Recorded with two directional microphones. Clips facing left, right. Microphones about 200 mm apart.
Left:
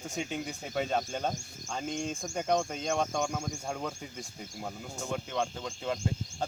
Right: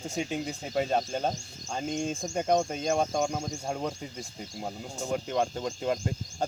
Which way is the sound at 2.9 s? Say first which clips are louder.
Right 3 dB; 35° right (ahead or behind).